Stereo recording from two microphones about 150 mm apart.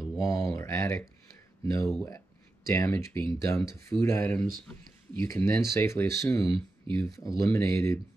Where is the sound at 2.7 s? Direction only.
20° left (ahead or behind).